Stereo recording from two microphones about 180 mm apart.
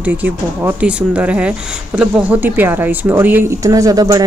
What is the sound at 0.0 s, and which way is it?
Speech, 10° right (ahead or behind).